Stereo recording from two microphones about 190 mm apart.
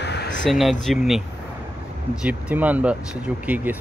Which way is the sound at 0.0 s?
65° left (ahead or behind).